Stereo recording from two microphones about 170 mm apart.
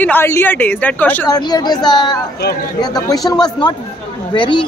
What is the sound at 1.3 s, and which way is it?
Speech, 25° left (ahead or behind).